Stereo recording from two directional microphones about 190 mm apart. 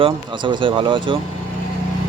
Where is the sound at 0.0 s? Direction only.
25° right (ahead or behind).